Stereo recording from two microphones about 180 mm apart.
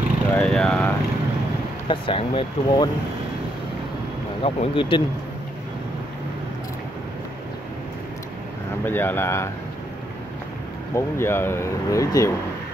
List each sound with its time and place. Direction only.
0.3 s speech: 5° left (ahead or behind)
1.9 s speech: 30° left (ahead or behind)
4.4 s speech: 30° left (ahead or behind)
8.8 s speech: 10° left (ahead or behind)
11.0 s speech: 15° left (ahead or behind)